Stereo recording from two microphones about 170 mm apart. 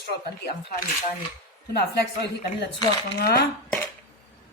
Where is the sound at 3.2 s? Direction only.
65° left (ahead or behind).